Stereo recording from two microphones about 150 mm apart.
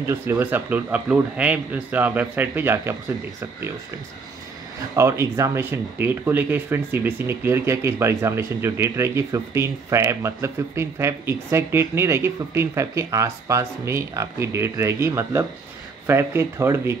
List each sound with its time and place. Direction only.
0.0 s speech: 15° right (ahead or behind)
4.9 s speech: 20° right (ahead or behind)